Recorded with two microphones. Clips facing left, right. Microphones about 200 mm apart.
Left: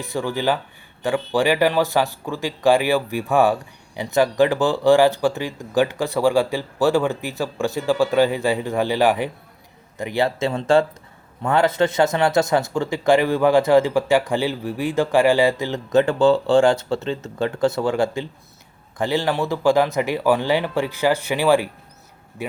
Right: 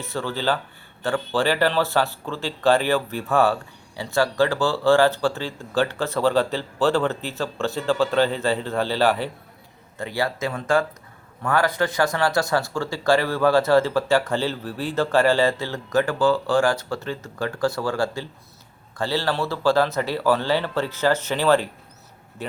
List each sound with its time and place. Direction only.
0.0 s speech: 15° left (ahead or behind)